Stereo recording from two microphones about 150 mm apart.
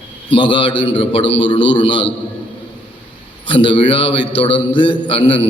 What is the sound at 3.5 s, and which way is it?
A man's voice, 35° left (ahead or behind).